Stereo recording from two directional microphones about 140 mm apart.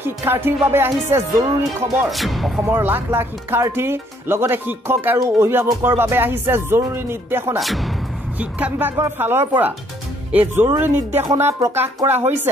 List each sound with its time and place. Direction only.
0.0 s speech: 15° right (ahead or behind)
2.0 s music: centre (ahead or behind)
2.7 s speech: 15° right (ahead or behind)
7.6 s music: centre (ahead or behind)
8.4 s speech: 10° right (ahead or behind)